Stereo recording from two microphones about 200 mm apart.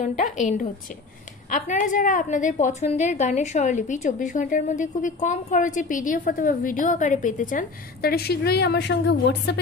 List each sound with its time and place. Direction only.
0.0 s a woman's voice: 40° left (ahead or behind); by 9.6 s 55° left (ahead or behind)